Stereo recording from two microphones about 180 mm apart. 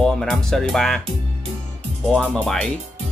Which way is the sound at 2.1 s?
Centre (ahead or behind).